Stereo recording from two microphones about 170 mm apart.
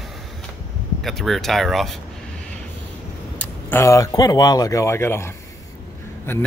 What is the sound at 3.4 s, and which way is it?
Speech, 15° left (ahead or behind).